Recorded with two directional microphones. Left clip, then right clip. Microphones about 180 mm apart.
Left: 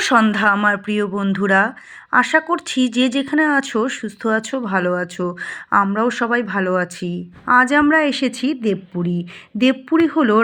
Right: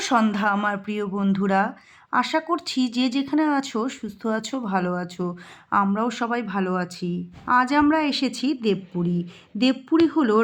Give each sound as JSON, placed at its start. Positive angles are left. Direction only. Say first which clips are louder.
{"t": 0.0, "sound": "speech", "louder": "left 7 dB", "side_deg": 15}